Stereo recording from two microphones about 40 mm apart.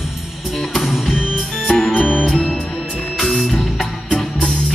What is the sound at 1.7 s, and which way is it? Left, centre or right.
Music, left.